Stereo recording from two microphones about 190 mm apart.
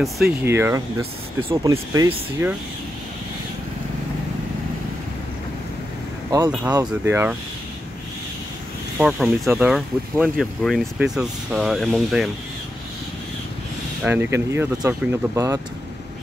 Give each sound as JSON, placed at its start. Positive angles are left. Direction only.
{"t": 0.0, "sound": "speech", "side_deg": 0}
{"t": 0.5, "sound": "speech", "side_deg": -15}
{"t": 6.9, "sound": "speech", "side_deg": -10}
{"t": 8.9, "sound": "speech", "side_deg": 0}
{"t": 14.0, "sound": "speech", "side_deg": -10}